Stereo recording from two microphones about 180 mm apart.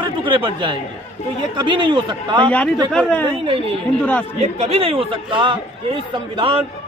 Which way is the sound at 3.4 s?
30° right (ahead or behind).